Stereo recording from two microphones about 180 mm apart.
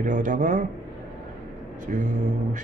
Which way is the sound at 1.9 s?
45° right (ahead or behind).